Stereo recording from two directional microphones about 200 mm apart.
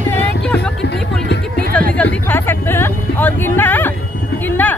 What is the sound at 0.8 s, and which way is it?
Music, 60° left (ahead or behind).